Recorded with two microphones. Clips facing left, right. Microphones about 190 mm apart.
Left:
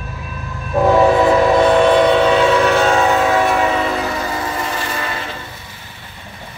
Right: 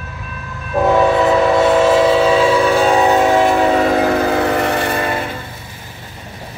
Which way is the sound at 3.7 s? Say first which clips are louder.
Right 6 dB; 50° right (ahead or behind).